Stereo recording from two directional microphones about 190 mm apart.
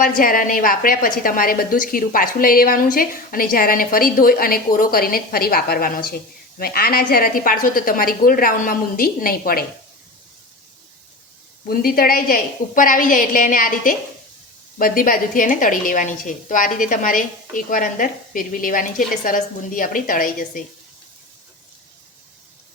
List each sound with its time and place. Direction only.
0.0 s a woman's voice: 45° left (ahead or behind)
11.7 s a woman's voice: 50° left (ahead or behind)